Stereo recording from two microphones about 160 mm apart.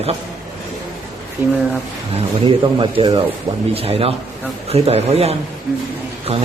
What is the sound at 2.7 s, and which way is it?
A man's voice, 30° right (ahead or behind).